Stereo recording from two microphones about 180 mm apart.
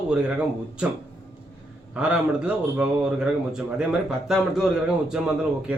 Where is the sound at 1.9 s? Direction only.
5° right (ahead or behind).